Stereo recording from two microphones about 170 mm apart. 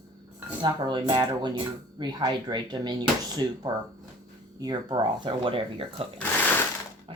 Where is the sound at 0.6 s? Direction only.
25° right (ahead or behind).